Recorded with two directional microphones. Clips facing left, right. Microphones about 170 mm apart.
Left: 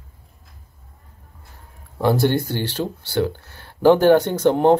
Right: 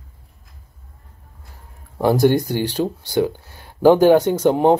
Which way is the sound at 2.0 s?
15° right (ahead or behind).